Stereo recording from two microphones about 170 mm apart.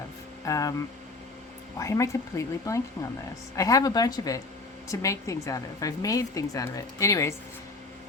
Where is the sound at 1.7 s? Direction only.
20° left (ahead or behind).